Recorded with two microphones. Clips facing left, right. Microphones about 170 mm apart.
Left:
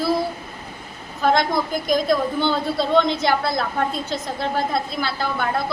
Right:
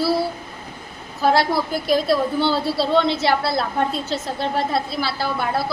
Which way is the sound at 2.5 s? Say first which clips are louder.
Even; 30° right (ahead or behind).